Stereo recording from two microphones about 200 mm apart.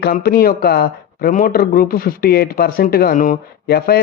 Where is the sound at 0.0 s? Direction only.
50° left (ahead or behind).